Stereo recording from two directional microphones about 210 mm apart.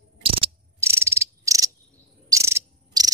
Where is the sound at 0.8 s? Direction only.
15° right (ahead or behind).